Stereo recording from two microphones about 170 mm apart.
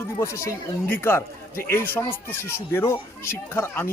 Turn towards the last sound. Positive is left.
turn(degrees=15)  # may be behind; listen again after turning